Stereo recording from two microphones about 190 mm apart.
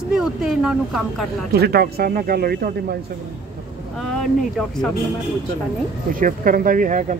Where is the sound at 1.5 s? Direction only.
55° right (ahead or behind).